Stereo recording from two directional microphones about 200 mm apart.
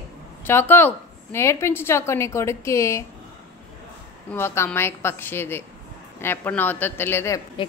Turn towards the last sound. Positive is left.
turn(degrees=25)  # may be behind; listen again after turning